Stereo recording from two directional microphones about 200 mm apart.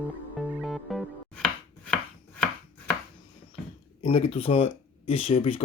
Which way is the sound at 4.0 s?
25° left (ahead or behind).